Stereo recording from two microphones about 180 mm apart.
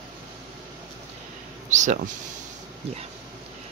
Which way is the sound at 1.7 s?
45° right (ahead or behind).